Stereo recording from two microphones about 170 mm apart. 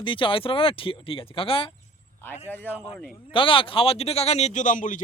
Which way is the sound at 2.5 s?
10° left (ahead or behind).